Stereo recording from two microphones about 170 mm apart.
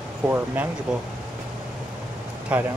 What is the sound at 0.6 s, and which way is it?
Speech, 10° right (ahead or behind).